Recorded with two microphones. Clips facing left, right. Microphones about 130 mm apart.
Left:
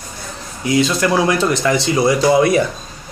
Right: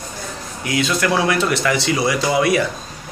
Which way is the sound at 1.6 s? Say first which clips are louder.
Left 3 dB; 25° left (ahead or behind).